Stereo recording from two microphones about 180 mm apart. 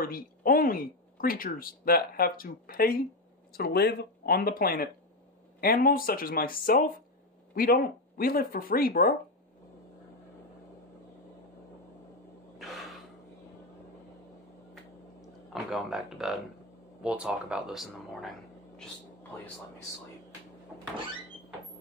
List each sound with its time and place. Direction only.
0.0 s speech: 55° left (ahead or behind)
15.2 s a sound: centre (ahead or behind)
17.0 s speech: 5° right (ahead or behind)